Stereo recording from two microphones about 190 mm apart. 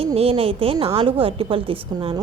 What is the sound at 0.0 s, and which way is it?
A woman's voice, 30° right (ahead or behind).